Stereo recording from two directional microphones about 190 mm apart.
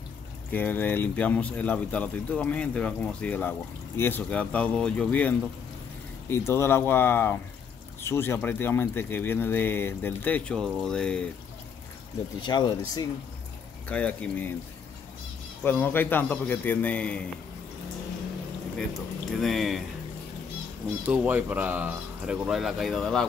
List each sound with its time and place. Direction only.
0.5 s speech: 10° left (ahead or behind)
12.4 s speech: 25° left (ahead or behind)
13.8 s speech: 5° left (ahead or behind)
15.6 s speech: 10° left (ahead or behind)
18.9 s speech: centre (ahead or behind)
21.0 s speech: 10° right (ahead or behind)